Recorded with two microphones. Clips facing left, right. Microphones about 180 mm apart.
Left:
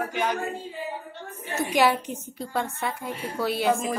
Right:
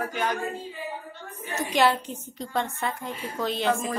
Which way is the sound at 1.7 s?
10° left (ahead or behind).